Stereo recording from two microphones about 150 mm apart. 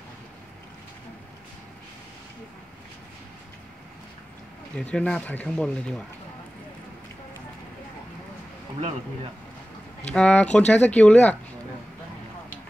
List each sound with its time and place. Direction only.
4.7 s speech: 5° left (ahead or behind)
10.1 s speech: 10° left (ahead or behind)